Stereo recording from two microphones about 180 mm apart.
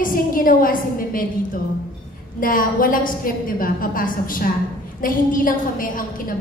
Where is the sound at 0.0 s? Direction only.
50° left (ahead or behind).